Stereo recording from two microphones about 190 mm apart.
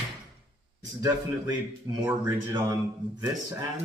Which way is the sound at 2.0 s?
20° right (ahead or behind).